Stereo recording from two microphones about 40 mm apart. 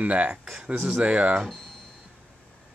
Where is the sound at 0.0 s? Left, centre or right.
Right.